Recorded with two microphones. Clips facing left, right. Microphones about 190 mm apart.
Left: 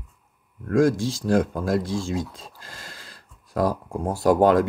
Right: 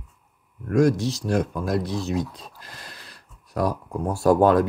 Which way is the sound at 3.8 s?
45° left (ahead or behind).